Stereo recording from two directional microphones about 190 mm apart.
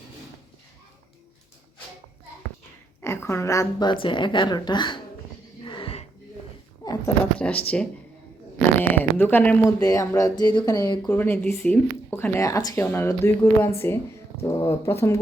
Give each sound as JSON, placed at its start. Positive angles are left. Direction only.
{"t": 3.0, "sound": "a woman's voice", "side_deg": 15}
{"t": 5.6, "sound": "music", "side_deg": 25}
{"t": 6.8, "sound": "a sound", "side_deg": 20}
{"t": 7.3, "sound": "a sound", "side_deg": 5}
{"t": 8.9, "sound": "speech", "side_deg": 10}
{"t": 11.1, "sound": "speech", "side_deg": 10}